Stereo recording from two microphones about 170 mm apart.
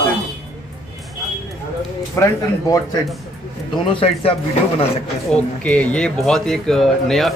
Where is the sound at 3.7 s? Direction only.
30° left (ahead or behind).